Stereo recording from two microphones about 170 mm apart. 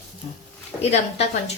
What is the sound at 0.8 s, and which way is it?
Speech, 40° left (ahead or behind).